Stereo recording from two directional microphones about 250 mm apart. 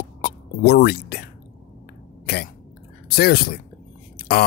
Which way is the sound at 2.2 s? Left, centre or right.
Left.